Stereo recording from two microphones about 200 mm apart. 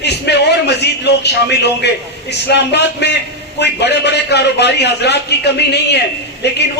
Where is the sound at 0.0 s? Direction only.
55° left (ahead or behind).